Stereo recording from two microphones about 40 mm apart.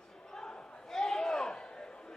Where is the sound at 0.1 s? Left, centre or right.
Centre.